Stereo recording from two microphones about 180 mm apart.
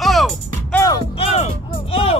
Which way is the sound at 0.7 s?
20° left (ahead or behind).